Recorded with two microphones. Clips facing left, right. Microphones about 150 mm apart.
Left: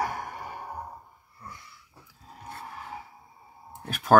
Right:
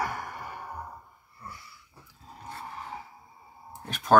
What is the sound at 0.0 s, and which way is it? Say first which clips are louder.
Sigh: left 2 dB; 45° left (ahead or behind).